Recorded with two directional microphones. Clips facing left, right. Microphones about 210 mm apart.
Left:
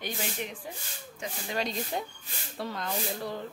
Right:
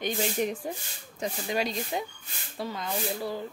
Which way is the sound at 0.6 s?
45° right (ahead or behind).